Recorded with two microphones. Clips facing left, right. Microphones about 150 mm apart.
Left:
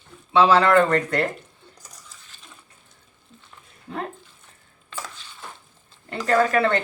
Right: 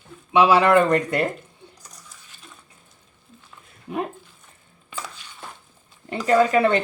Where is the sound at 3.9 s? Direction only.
15° right (ahead or behind).